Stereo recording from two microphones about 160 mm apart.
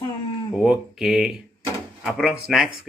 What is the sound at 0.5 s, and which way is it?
Speech, 5° right (ahead or behind).